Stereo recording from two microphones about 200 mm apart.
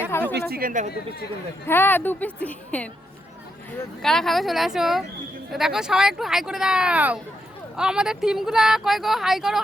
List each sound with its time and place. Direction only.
0.1 s speech: 10° left (ahead or behind)
0.3 s speech: 45° right (ahead or behind)
1.6 s a woman's voice: 10° left (ahead or behind)
4.0 s speech: centre (ahead or behind)